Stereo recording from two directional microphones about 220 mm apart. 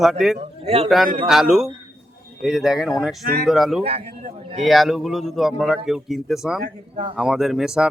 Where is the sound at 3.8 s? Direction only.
25° right (ahead or behind).